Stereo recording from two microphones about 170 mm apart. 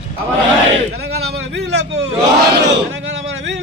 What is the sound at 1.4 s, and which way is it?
Speech, 80° right.